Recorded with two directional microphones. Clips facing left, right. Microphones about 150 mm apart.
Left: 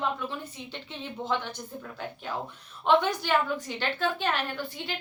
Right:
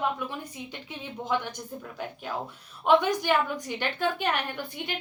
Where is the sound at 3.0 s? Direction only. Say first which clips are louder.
Right 1 dB; 15° right (ahead or behind).